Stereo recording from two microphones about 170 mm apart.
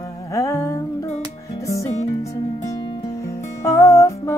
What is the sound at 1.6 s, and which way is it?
Music, 20° left (ahead or behind).